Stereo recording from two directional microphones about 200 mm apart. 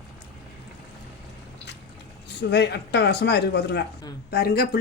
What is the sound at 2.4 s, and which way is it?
Speech, 60° left (ahead or behind).